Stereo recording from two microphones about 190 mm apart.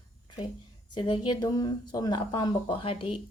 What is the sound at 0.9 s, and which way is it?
A woman's voice, 25° left (ahead or behind).